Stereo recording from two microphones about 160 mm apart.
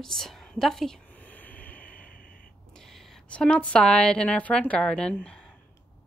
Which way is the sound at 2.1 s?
60° left (ahead or behind).